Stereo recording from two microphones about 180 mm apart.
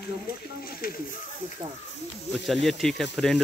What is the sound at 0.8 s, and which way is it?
Speech, 55° left (ahead or behind).